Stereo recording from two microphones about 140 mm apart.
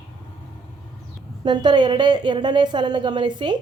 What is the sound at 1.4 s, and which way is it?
A woman's voice, 30° right (ahead or behind).